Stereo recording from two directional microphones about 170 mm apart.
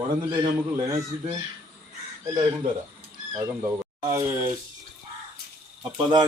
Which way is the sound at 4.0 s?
15° right (ahead or behind).